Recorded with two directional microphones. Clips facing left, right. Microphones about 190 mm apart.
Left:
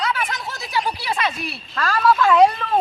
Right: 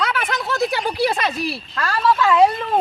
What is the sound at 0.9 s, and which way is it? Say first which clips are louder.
Speech: right 4 dB; 45° right (ahead or behind).